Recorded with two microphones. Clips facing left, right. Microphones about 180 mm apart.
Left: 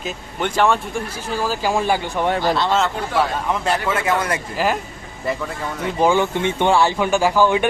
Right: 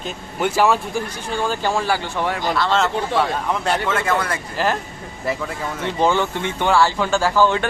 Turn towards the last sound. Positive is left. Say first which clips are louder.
# left 1 dB
turn(degrees=15)  # may be behind; listen again after turning